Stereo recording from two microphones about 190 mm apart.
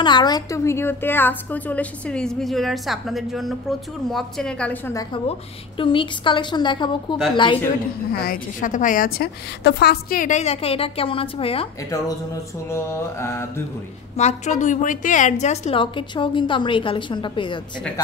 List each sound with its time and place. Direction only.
0.0 s a woman's voice: 25° left (ahead or behind); by 4.9 s 5° left (ahead or behind)
5.8 s a woman's voice: 25° left (ahead or behind)
8.1 s a woman's voice: 50° left (ahead or behind)
9.6 s a woman's voice: 65° left (ahead or behind); by 11.7 s 30° left (ahead or behind)
12.6 s a woman's voice: 15° left (ahead or behind)
14.1 s a woman's voice: 35° left (ahead or behind)